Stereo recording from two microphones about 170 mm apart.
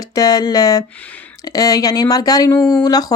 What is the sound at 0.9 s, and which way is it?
Speech, 10° left (ahead or behind).